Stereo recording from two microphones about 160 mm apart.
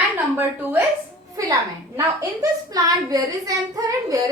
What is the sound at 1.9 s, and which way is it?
A woman's voice, 20° right (ahead or behind).